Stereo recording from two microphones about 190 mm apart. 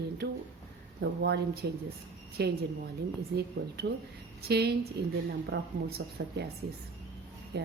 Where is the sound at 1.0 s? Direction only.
60° right (ahead or behind).